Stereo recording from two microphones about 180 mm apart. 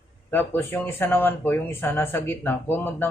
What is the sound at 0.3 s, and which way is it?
Speech, 10° left (ahead or behind).